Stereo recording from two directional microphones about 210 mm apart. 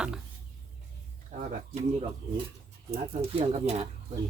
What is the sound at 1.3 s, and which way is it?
Speech, 35° right (ahead or behind).